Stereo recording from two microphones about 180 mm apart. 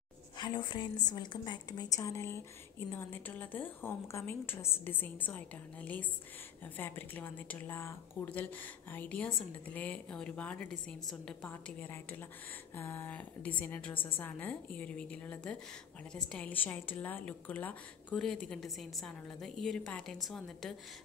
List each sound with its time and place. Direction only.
0.4 s a woman's voice: 25° left (ahead or behind); by 20.7 s centre (ahead or behind)